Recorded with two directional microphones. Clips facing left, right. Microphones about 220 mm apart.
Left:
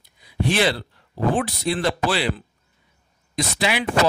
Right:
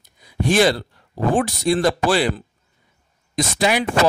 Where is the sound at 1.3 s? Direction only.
45° right (ahead or behind).